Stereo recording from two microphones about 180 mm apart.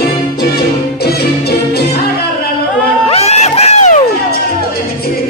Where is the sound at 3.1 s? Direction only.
35° left (ahead or behind).